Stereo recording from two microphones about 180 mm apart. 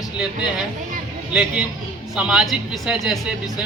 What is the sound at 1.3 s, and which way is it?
Speech, 5° right (ahead or behind).